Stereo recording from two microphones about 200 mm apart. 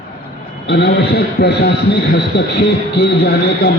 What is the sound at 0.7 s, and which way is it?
A man's voice, 55° left (ahead or behind).